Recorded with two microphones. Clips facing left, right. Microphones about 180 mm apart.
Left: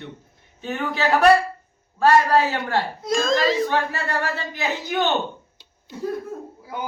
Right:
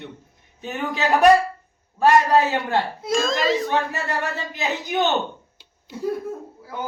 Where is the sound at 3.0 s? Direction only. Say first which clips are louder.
Left 3 dB; centre (ahead or behind).